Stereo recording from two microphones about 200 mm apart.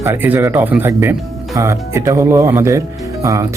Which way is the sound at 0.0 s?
10° right (ahead or behind).